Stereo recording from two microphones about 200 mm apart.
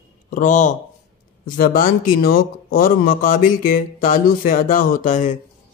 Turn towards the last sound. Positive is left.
turn(degrees=40)  # may be behind; listen again after turning